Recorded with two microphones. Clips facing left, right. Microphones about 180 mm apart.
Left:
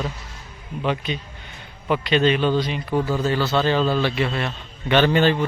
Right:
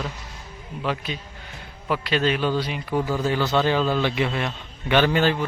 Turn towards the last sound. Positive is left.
turn(degrees=-5)  # may be behind; listen again after turning